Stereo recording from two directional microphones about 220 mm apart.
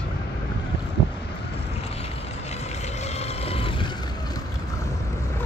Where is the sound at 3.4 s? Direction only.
25° left (ahead or behind).